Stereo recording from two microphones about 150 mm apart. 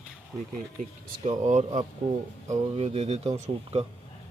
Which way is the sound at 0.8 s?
50° right (ahead or behind).